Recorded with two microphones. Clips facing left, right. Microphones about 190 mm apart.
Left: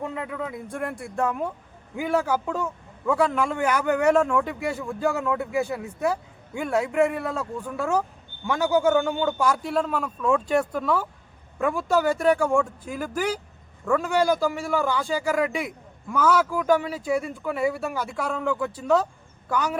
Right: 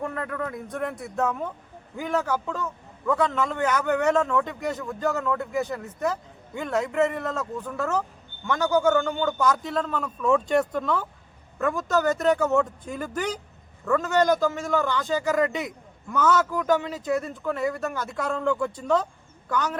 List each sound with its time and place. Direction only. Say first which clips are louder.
0.0 s a man's voice: right 1 dB; 15° left (ahead or behind)